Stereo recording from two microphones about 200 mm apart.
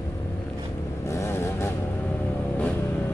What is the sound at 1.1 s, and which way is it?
Vehicle, 15° left (ahead or behind).